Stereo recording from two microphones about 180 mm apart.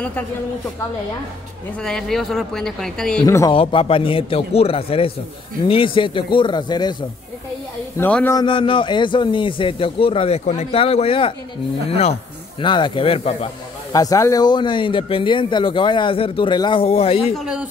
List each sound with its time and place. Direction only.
1.8 s speech: 5° left (ahead or behind)
3.3 s speech: 20° left (ahead or behind)
3.5 s a man's voice: 30° left (ahead or behind)
8.0 s a man's voice: 10° left (ahead or behind)
8.4 s a man's voice: 30° left (ahead or behind)
13.9 s speech: 20° left (ahead or behind); by 17.4 s 35° left (ahead or behind)